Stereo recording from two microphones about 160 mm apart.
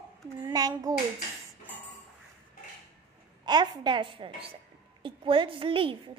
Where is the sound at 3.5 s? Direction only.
30° right (ahead or behind).